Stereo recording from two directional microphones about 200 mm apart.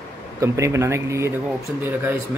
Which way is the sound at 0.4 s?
15° right (ahead or behind).